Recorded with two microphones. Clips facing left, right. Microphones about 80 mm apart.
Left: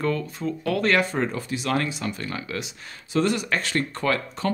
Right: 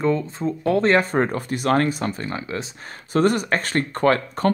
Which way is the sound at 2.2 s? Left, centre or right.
Right.